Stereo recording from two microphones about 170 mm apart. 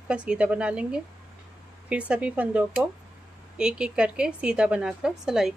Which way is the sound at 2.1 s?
10° right (ahead or behind).